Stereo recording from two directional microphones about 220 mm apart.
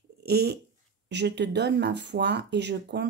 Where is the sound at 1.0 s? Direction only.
50° right (ahead or behind).